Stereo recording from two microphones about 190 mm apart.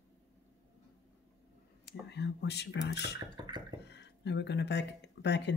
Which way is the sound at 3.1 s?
20° right (ahead or behind).